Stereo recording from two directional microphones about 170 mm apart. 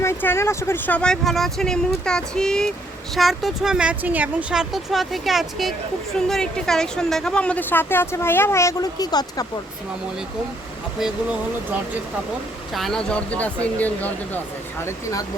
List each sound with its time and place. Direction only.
0.0 s a woman's voice: 15° left (ahead or behind)
11.0 s speech: 5° right (ahead or behind)
12.7 s a woman's voice: 5° left (ahead or behind)